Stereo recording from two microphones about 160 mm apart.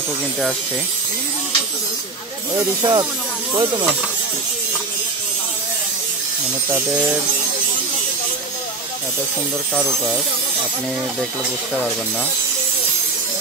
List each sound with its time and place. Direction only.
2.5 s speech: 25° right (ahead or behind)